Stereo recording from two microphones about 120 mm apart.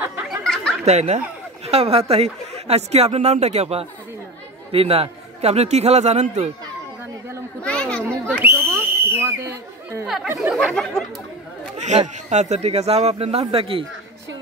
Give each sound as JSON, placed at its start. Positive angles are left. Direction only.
{"t": 0.4, "sound": "chatter", "side_deg": 5}
{"t": 0.8, "sound": "a man's voice", "side_deg": -65}
{"t": 1.7, "sound": "speech", "side_deg": -55}
{"t": 4.7, "sound": "speech", "side_deg": -55}
{"t": 7.6, "sound": "children playing", "side_deg": 10}
{"t": 8.4, "sound": "chatter", "side_deg": -20}
{"t": 10.0, "sound": "speech", "side_deg": 0}
{"t": 11.8, "sound": "a man's voice", "side_deg": -75}